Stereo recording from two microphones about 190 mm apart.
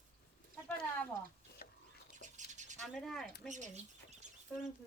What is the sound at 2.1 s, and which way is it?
Bird, 40° right (ahead or behind).